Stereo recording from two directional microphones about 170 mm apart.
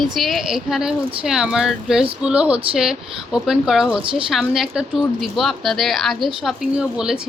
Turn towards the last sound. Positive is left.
turn(degrees=-5)  # may be behind; listen again after turning